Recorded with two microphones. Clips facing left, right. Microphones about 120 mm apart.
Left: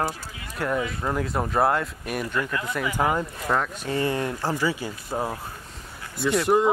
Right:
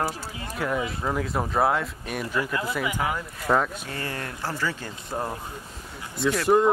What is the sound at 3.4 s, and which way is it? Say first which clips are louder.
Speech: right 4 dB; 5° right (ahead or behind).